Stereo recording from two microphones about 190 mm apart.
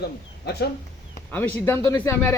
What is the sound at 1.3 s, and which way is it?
Speech, 10° left (ahead or behind).